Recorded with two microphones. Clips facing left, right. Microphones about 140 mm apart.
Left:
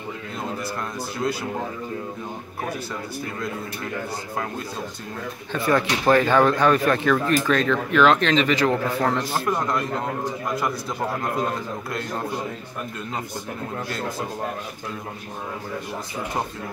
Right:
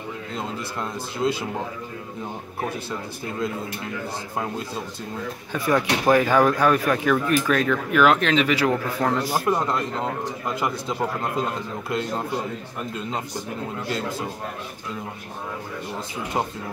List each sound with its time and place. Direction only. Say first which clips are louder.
1.2 s speech: right 3 dB; 25° right (ahead or behind)
5.5 s speech: even; 10° right (ahead or behind)